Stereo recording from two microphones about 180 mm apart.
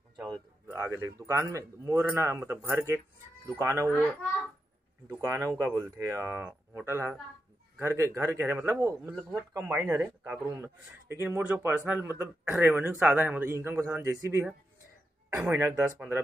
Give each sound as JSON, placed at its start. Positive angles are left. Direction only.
{"t": 0.2, "sound": "speech", "side_deg": -15}
{"t": 3.8, "sound": "a child's voice", "side_deg": 10}
{"t": 5.0, "sound": "speech", "side_deg": -15}